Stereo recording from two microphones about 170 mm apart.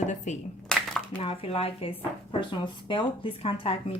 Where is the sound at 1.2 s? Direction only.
35° left (ahead or behind).